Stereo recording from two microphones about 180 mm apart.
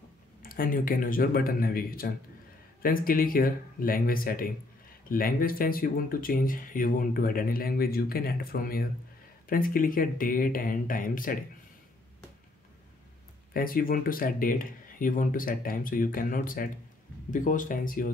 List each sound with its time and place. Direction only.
0.4 s speech: 50° left (ahead or behind)
13.5 s speech: 50° left (ahead or behind)